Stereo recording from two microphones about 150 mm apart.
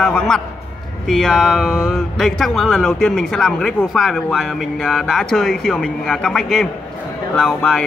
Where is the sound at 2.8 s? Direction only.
10° left (ahead or behind).